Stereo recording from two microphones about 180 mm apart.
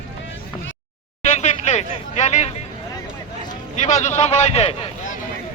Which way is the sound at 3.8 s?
40° left (ahead or behind).